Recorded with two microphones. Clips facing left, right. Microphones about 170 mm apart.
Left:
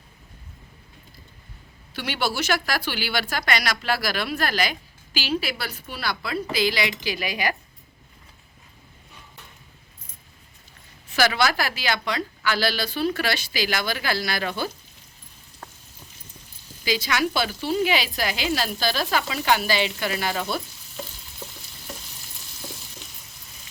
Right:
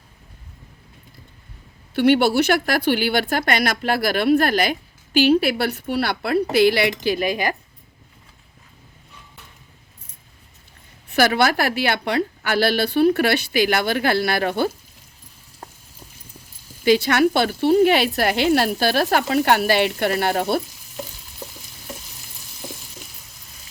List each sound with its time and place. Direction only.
2.0 s speech: 55° right (ahead or behind)
11.1 s speech: 55° right (ahead or behind)
16.8 s speech: 60° right (ahead or behind)